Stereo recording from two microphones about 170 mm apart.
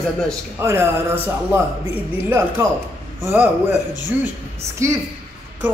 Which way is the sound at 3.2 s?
15° right (ahead or behind).